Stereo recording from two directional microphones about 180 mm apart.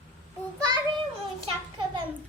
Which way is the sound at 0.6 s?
25° right (ahead or behind).